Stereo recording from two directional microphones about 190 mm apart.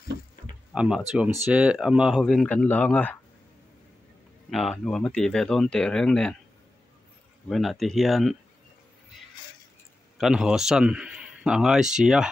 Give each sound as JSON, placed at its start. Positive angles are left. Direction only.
{"t": 0.7, "sound": "a man's voice", "side_deg": -5}
{"t": 4.5, "sound": "a man's voice", "side_deg": 0}
{"t": 7.4, "sound": "a man's voice", "side_deg": 0}
{"t": 10.1, "sound": "a man's voice", "side_deg": 0}